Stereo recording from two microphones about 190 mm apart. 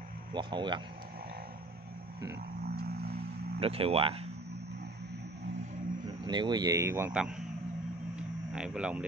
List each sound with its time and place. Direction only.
0.3 s speech: 25° right (ahead or behind)
3.5 s speech: 30° right (ahead or behind)
6.2 s speech: 25° right (ahead or behind); by 7.4 s 5° right (ahead or behind)
8.2 s a sound: 5° right (ahead or behind)